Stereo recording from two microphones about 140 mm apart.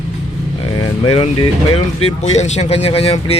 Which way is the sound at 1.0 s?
40° left (ahead or behind).